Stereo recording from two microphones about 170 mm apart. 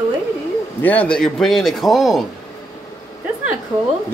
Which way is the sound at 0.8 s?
10° left (ahead or behind).